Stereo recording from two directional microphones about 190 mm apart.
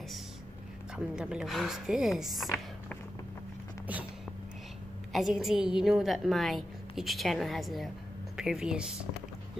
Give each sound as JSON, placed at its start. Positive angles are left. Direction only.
{"t": 0.9, "sound": "a woman's voice", "side_deg": -5}
{"t": 5.1, "sound": "a woman's voice", "side_deg": 0}